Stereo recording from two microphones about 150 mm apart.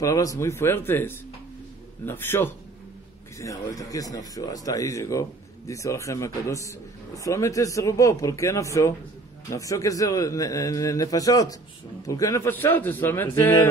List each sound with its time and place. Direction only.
0.0 s a man's voice: 25° left (ahead or behind)